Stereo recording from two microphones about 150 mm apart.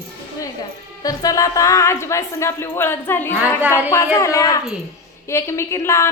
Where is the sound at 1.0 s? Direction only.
25° left (ahead or behind).